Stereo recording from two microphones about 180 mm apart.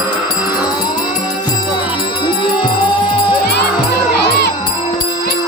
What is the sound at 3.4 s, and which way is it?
Music, 65° left (ahead or behind).